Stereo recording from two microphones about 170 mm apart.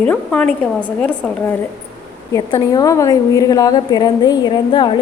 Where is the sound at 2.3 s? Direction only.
20° left (ahead or behind).